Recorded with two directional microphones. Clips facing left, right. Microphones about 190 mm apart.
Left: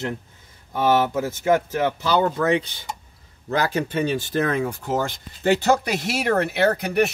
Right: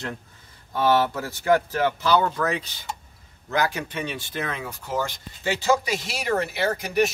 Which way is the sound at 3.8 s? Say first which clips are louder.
Left 8 dB; 45° left (ahead or behind).